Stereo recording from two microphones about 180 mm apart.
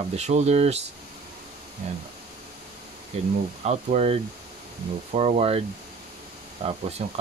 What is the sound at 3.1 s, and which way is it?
Speech, 35° right (ahead or behind).